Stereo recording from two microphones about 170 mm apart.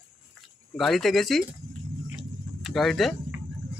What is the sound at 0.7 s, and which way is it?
Speech, centre (ahead or behind).